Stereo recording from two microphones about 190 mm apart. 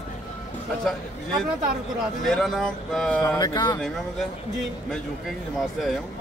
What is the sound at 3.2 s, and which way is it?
Speech, 20° left (ahead or behind).